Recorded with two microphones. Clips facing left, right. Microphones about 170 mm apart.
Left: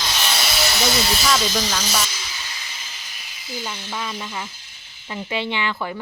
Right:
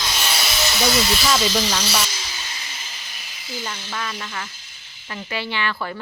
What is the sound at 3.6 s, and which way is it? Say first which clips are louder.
Speech: even; 10° left (ahead or behind).